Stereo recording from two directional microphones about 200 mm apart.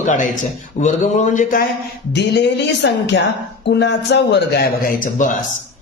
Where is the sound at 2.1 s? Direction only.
60° left (ahead or behind).